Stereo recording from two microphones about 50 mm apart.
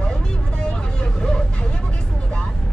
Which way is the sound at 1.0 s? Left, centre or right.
Centre.